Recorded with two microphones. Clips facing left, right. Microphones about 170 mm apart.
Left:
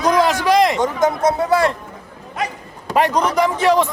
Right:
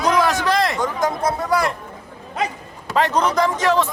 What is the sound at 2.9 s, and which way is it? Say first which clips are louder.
Speech: left 2 dB; 15° left (ahead or behind).